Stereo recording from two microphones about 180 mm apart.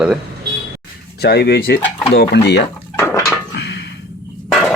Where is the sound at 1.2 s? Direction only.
65° left (ahead or behind).